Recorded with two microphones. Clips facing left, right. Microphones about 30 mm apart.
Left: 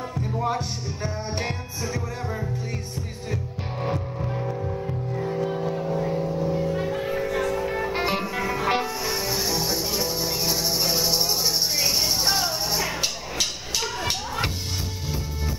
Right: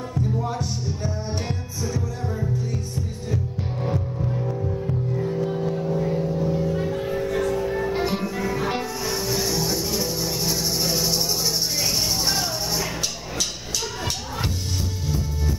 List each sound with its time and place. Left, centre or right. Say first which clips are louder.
0.2 s music: even; left
3.8 s music: right 1 dB; centre
13.0 s music: left 1 dB; left